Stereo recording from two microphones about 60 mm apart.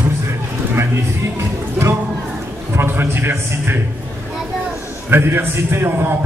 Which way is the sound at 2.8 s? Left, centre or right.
Right.